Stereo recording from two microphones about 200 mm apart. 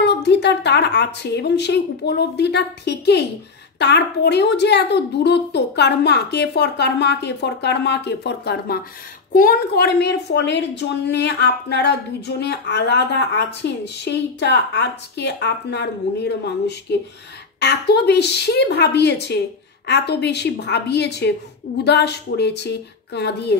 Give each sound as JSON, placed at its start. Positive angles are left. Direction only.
{"t": 0.0, "sound": "a woman's voice", "side_deg": 60}